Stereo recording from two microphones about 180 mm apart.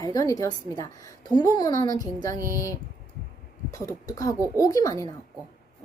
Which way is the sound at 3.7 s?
20° left (ahead or behind).